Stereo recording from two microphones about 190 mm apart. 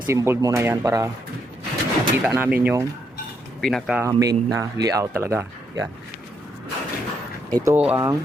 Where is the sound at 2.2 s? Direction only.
10° right (ahead or behind).